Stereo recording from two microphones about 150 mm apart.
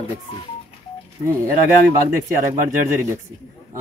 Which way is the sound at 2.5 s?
20° right (ahead or behind).